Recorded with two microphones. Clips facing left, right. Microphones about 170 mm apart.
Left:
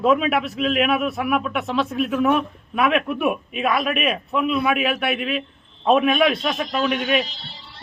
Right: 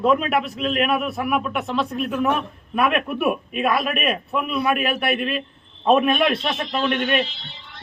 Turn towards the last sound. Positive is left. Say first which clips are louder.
# even
turn(degrees=35)  # may be behind; listen again after turning